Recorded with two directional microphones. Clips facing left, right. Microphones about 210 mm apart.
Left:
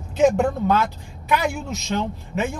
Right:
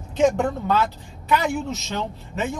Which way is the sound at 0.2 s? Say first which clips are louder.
Left 2 dB; 15° left (ahead or behind).